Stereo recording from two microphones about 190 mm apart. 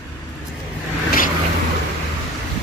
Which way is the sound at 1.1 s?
45° left (ahead or behind).